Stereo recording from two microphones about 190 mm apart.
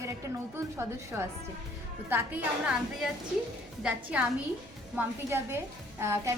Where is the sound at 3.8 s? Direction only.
5° right (ahead or behind).